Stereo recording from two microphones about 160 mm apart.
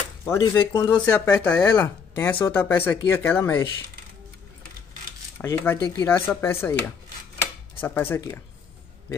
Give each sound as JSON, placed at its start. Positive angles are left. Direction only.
{"t": 0.2, "sound": "speech", "side_deg": 20}
{"t": 0.8, "sound": "speech", "side_deg": 10}
{"t": 5.4, "sound": "speech", "side_deg": 15}
{"t": 5.8, "sound": "speech", "side_deg": 25}
{"t": 6.0, "sound": "speech", "side_deg": 15}
{"t": 7.8, "sound": "speech", "side_deg": 15}